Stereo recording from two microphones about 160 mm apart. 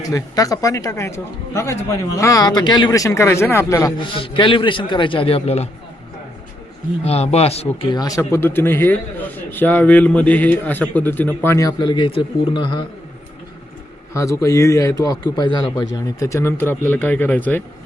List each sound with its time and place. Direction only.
0.0 s speech: 20° left (ahead or behind)
4.0 s a man's voice: 30° left (ahead or behind)
7.0 s a man's voice: 40° left (ahead or behind)
7.9 s speech: 25° left (ahead or behind)
8.3 s a man's voice: 15° left (ahead or behind); by 12.8 s 30° left (ahead or behind)
14.1 s speech: 20° left (ahead or behind)